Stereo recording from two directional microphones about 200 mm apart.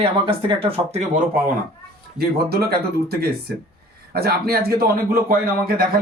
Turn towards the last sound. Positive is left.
turn(degrees=-45)  # may be behind; listen again after turning